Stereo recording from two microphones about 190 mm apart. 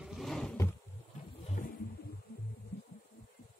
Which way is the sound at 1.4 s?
40° left (ahead or behind).